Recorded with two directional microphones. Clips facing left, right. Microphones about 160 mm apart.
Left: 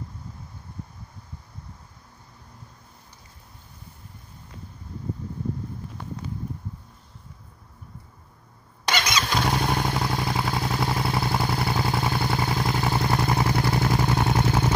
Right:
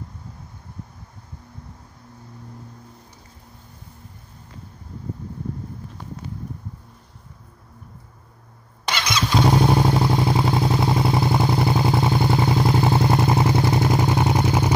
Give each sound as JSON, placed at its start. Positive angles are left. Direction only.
{"t": 9.4, "sound": "vehicle", "side_deg": -25}